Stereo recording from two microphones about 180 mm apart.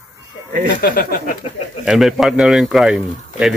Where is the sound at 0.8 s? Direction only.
55° left (ahead or behind).